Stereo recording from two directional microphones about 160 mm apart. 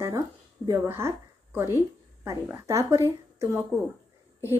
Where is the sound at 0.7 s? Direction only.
15° right (ahead or behind).